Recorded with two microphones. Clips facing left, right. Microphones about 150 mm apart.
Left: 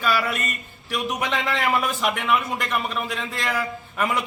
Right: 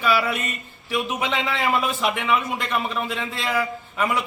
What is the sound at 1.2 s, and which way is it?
Speech, 20° right (ahead or behind).